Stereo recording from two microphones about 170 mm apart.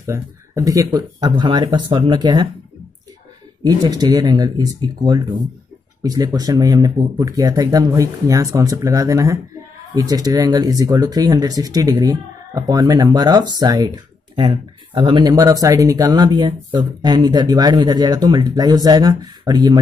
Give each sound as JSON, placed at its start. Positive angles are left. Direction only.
{"t": 0.0, "sound": "speech", "side_deg": -20}
{"t": 3.6, "sound": "speech", "side_deg": -20}